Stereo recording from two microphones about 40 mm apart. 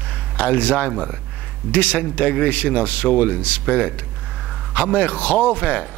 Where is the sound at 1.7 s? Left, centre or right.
Left.